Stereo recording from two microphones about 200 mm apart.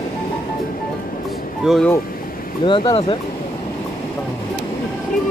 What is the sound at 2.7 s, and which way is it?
Speech, 25° left (ahead or behind).